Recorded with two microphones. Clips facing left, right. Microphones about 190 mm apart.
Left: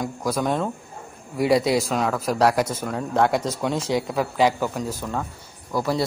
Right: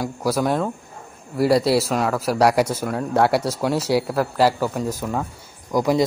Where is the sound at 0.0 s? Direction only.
5° right (ahead or behind).